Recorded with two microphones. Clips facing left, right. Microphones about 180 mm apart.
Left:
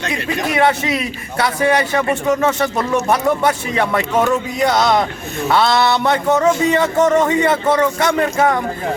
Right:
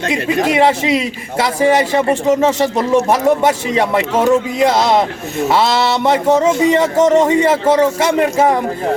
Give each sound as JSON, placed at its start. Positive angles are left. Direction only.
{"t": 0.4, "sound": "a man's voice", "side_deg": -25}